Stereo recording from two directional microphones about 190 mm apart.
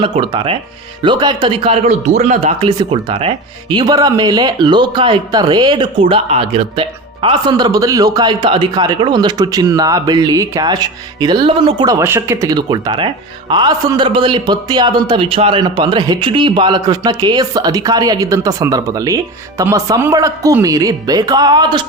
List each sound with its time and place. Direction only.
0.0 s speech: 25° right (ahead or behind)
2.6 s speech: 25° right (ahead or behind)